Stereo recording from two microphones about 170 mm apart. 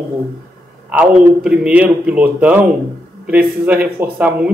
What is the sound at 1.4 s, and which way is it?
Speech, 5° right (ahead or behind).